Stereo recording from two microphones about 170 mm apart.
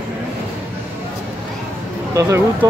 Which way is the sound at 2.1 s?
20° right (ahead or behind).